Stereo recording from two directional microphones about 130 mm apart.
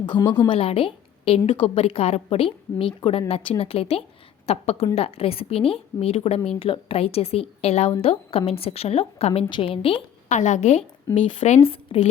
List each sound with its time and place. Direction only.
0.0 s a woman's voice: 35° left (ahead or behind); by 9.5 s 50° left (ahead or behind)
9.5 s a woman's voice: 40° left (ahead or behind)
10.2 s a woman's voice: 65° left (ahead or behind); by 12.0 s 45° left (ahead or behind)